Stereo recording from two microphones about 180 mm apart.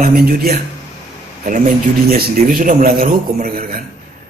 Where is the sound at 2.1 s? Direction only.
50° right (ahead or behind).